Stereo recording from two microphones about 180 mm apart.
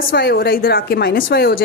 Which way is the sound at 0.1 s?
55° left (ahead or behind).